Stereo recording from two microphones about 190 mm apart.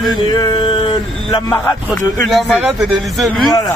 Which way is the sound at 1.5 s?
15° left (ahead or behind).